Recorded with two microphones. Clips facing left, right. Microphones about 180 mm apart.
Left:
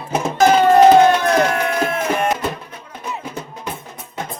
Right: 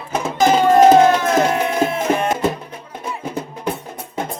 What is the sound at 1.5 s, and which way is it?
Music, 25° right (ahead or behind).